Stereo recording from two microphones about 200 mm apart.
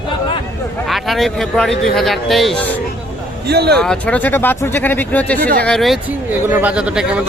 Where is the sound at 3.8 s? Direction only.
5° left (ahead or behind).